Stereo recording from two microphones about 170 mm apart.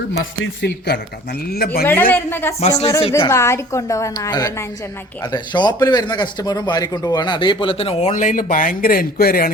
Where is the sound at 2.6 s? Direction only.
40° left (ahead or behind).